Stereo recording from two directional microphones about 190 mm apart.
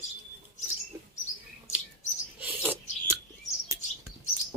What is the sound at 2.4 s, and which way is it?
Filing, 10° right (ahead or behind).